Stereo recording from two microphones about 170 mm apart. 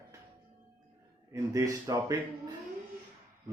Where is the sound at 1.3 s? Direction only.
20° right (ahead or behind).